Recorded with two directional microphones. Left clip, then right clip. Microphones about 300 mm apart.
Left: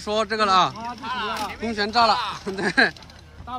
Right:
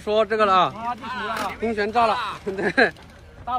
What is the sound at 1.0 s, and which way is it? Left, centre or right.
Speech, left.